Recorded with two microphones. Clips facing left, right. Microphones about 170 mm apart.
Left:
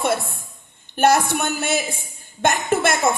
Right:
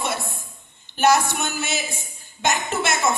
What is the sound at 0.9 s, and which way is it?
A woman's voice, 55° left (ahead or behind).